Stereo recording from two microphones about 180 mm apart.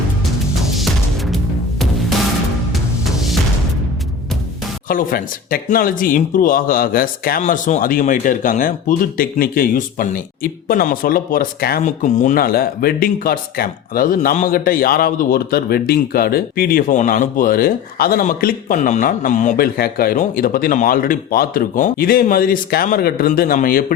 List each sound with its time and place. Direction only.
2.7 s music: centre (ahead or behind)
4.9 s speech: 50° left (ahead or behind)
11.8 s speech: 40° left (ahead or behind)